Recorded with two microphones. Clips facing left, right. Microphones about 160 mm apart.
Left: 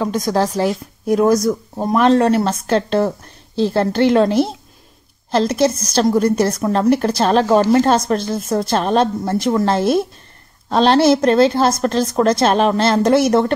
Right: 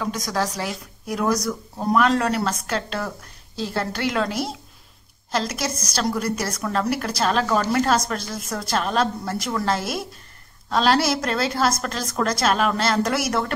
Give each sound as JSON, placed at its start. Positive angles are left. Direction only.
{"t": 0.0, "sound": "speech", "side_deg": 25}